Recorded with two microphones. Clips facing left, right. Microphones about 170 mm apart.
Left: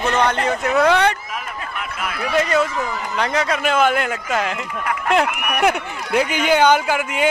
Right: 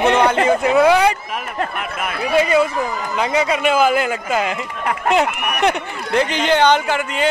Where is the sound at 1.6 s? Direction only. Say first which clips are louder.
Right 6 dB; 55° right (ahead or behind).